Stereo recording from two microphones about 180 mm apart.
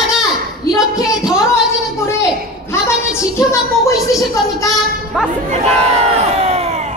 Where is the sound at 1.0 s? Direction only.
Centre (ahead or behind).